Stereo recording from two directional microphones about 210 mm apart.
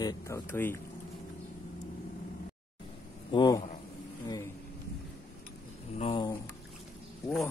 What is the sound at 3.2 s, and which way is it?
Speech, 20° left (ahead or behind).